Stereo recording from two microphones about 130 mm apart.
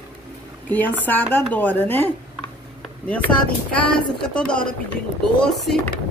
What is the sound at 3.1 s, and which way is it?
Speech, 10° left (ahead or behind).